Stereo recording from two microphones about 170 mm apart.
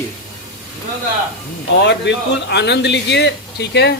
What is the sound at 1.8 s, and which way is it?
Speech, 90° left.